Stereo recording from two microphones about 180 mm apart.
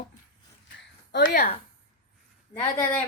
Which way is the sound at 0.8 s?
75° left (ahead or behind).